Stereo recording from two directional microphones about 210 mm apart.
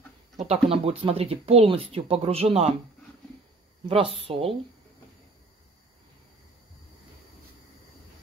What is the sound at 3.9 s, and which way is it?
Speech, 25° right (ahead or behind).